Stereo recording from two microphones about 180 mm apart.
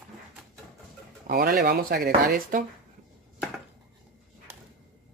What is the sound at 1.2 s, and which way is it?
Speech, 50° right (ahead or behind).